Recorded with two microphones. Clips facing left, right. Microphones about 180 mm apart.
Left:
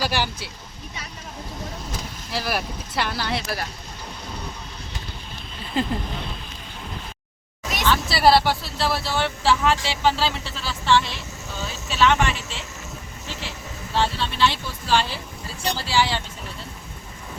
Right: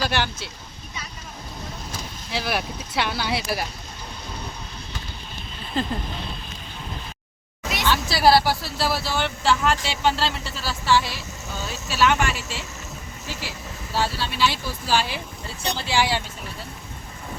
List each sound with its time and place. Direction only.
0.0 s speech: 10° left (ahead or behind)
2.3 s speech: centre (ahead or behind)
7.9 s speech: centre (ahead or behind)
13.9 s speech: 5° right (ahead or behind)